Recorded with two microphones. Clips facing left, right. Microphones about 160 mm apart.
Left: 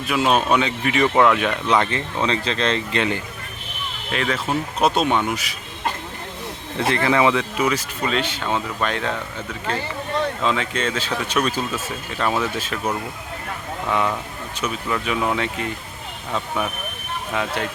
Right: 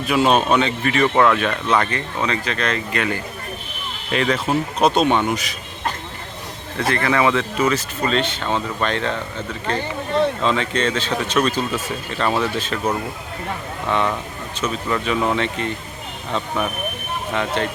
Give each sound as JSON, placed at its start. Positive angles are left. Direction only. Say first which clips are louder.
{"t": 0.1, "sound": "speech", "louder": "right 2 dB", "side_deg": 0}
{"t": 4.1, "sound": "speech", "louder": "right 4 dB", "side_deg": 0}
{"t": 6.7, "sound": "speech", "louder": "even", "side_deg": 20}
{"t": 10.4, "sound": "speech", "louder": "right 2 dB", "side_deg": 5}
{"t": 13.9, "sound": "speech", "louder": "right 1 dB", "side_deg": 5}